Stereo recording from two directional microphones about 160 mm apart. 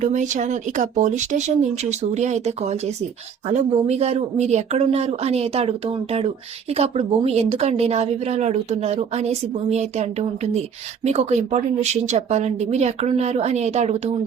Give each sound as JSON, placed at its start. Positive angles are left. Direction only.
{"t": 0.0, "sound": "speech", "side_deg": -50}